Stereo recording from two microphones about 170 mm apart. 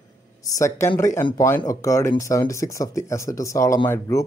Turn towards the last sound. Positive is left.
turn(degrees=15)  # may be behind; listen again after turning